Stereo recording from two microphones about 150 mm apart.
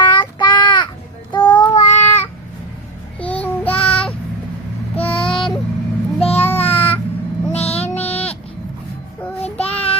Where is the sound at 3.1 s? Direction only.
10° left (ahead or behind).